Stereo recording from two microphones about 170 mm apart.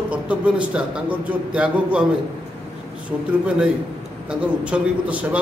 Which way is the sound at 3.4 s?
5° right (ahead or behind).